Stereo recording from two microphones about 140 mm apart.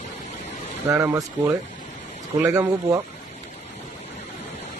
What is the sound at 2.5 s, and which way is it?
Speech, 25° right (ahead or behind).